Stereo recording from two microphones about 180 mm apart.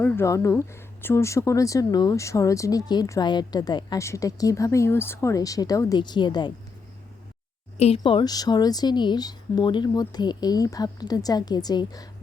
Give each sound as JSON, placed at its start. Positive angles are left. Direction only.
{"t": 0.0, "sound": "speech", "side_deg": 10}
{"t": 7.8, "sound": "a woman's voice", "side_deg": 35}